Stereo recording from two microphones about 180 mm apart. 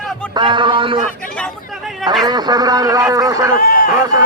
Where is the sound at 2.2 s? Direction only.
20° right (ahead or behind).